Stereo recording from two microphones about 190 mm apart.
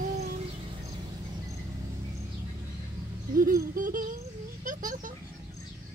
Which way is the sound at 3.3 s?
50° right (ahead or behind).